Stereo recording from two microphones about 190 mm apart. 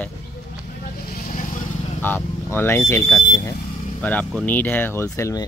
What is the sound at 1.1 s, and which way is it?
Vehicle, 45° left (ahead or behind).